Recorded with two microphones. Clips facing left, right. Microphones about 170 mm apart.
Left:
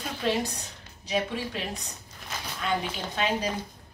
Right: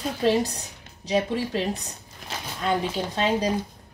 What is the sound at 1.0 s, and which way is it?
Speech, 35° right (ahead or behind).